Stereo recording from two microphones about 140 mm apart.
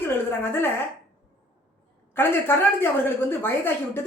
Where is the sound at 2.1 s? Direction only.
15° left (ahead or behind).